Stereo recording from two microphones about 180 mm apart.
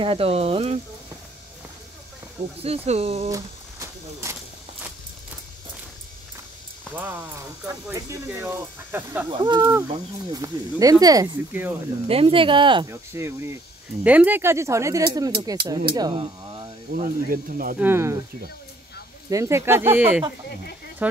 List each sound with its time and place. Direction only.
0.0 s speech: 30° right (ahead or behind)
2.6 s speech: 35° right (ahead or behind)
3.3 s a sound: 15° right (ahead or behind)
7.0 s speech: 15° right (ahead or behind)
9.3 s speech: 25° right (ahead or behind)
12.1 s speech: 30° right (ahead or behind)
12.9 s speech: 15° right (ahead or behind)
16.9 s speech: 50° right (ahead or behind)
17.7 s speech: 10° right (ahead or behind)
19.2 s speech: 15° right (ahead or behind)